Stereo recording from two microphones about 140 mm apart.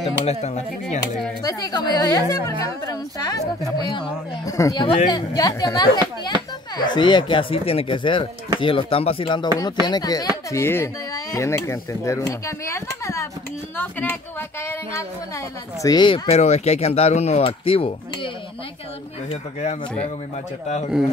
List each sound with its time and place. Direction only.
0.2 s speech: 50° left (ahead or behind)
1.4 s a woman's voice: 25° left (ahead or behind)
6.8 s a woman's voice: 30° left (ahead or behind)
16.3 s speech: 55° left (ahead or behind)
19.6 s speech: 55° left (ahead or behind)